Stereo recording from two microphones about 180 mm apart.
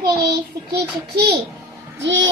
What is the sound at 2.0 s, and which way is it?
Speech, 90° right.